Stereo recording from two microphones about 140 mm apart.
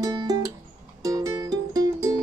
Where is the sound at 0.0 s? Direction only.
25° right (ahead or behind).